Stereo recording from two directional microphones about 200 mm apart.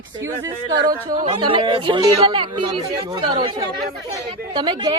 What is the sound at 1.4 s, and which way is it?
A woman's voice, 25° right (ahead or behind).